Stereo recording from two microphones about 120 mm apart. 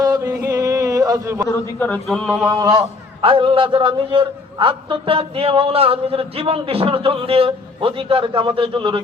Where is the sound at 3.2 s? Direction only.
45° right (ahead or behind).